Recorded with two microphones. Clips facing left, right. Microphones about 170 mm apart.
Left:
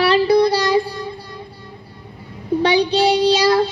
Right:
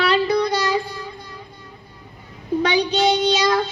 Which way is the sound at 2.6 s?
30° left (ahead or behind).